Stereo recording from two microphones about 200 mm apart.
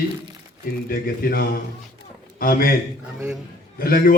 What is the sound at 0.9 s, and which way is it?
A man's voice, 50° left (ahead or behind).